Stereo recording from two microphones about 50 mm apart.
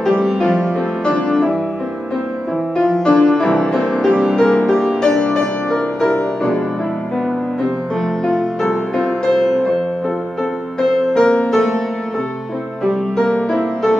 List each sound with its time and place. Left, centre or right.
1.3 s music: centre
3.1 s music: centre
8.3 s music: centre
9.3 s music: centre
11.1 s music: centre
12.8 s music: centre